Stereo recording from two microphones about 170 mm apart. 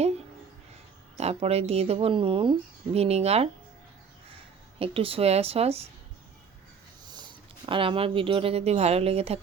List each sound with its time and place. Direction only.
1.2 s speech: 35° right (ahead or behind)
4.8 s speech: 35° right (ahead or behind)
7.1 s speech: 25° right (ahead or behind)